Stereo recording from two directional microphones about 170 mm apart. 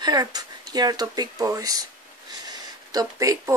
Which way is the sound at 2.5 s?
20° right (ahead or behind).